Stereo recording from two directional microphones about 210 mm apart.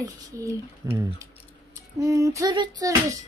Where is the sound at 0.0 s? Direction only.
15° right (ahead or behind).